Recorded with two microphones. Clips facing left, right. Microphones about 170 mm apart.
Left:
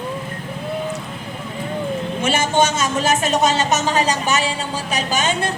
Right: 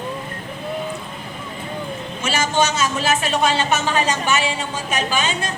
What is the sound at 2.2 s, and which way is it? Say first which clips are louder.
A woman's voice: left 2 dB; 55° left (ahead or behind).